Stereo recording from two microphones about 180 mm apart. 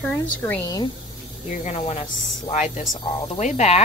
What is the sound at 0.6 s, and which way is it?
Speech, 20° left (ahead or behind).